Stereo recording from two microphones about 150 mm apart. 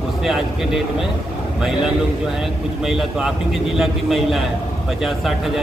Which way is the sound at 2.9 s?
5° right (ahead or behind).